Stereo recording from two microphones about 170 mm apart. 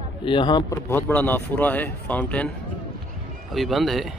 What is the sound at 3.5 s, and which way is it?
Speech, centre (ahead or behind).